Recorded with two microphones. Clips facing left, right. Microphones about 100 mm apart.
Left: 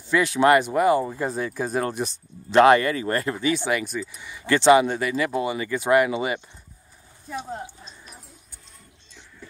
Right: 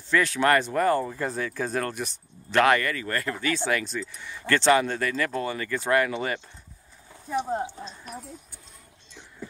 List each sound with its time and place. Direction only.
0.1 s speech: 15° left (ahead or behind)
7.4 s speech: 20° right (ahead or behind)